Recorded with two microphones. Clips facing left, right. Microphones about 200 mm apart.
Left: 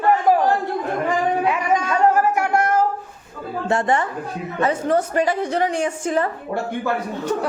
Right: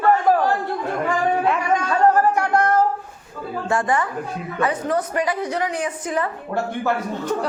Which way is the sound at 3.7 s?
25° left (ahead or behind).